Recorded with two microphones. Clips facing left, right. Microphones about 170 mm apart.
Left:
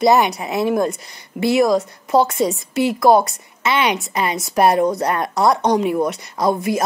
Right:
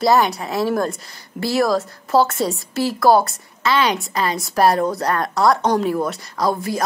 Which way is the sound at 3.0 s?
20° left (ahead or behind).